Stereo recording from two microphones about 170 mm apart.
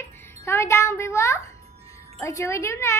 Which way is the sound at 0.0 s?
15° left (ahead or behind).